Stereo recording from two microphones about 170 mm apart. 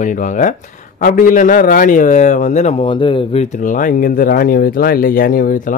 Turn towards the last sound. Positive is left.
turn(degrees=55)  # may be behind; listen again after turning